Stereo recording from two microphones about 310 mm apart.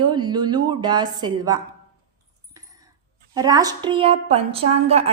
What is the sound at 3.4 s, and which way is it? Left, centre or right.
A woman's voice, centre.